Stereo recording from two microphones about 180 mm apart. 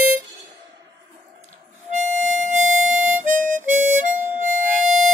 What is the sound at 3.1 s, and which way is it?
Harmonica, 45° right (ahead or behind).